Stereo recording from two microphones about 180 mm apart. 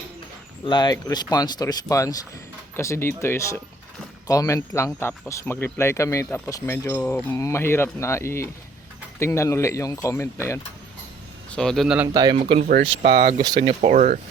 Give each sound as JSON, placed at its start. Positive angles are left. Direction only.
{"t": 0.6, "sound": "speech", "side_deg": 25}
{"t": 11.5, "sound": "speech", "side_deg": 5}
{"t": 11.9, "sound": "a man's voice", "side_deg": -20}
{"t": 13.9, "sound": "speech", "side_deg": -45}